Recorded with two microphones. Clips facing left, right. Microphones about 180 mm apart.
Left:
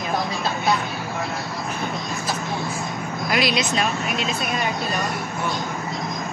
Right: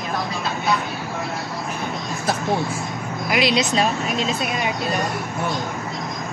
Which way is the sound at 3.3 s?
20° right (ahead or behind).